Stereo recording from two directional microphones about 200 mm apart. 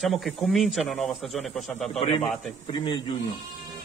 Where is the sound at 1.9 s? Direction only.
25° left (ahead or behind).